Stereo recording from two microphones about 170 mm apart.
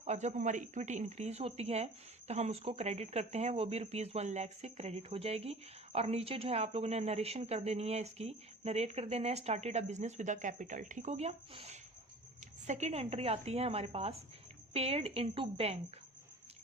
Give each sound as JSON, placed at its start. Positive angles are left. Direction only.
{"t": 0.0, "sound": "a woman's voice", "side_deg": -40}